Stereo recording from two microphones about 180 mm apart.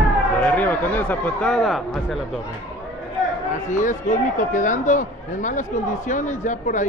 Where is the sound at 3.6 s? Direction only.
45° left (ahead or behind).